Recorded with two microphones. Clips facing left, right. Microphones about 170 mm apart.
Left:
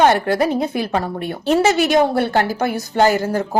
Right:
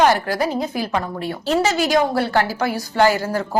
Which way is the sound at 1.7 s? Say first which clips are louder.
Left 4 dB; 65° left (ahead or behind).